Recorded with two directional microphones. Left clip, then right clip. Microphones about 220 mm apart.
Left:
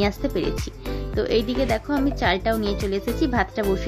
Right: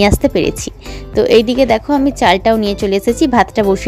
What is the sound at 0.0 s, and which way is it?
Speech, 40° right (ahead or behind).